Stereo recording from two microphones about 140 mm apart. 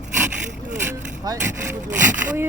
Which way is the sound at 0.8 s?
20° right (ahead or behind).